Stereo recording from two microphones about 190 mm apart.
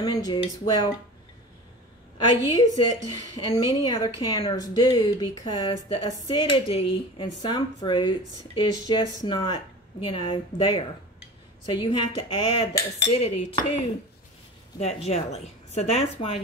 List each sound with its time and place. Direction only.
0.0 s speech: 20° left (ahead or behind)
2.1 s speech: 20° left (ahead or behind)
14.8 s speech: 35° left (ahead or behind)